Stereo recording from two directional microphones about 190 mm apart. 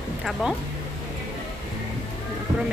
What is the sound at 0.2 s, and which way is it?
Speech, centre (ahead or behind).